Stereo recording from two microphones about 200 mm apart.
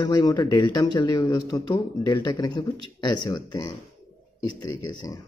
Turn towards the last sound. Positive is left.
turn(degrees=20)  # may be behind; listen again after turning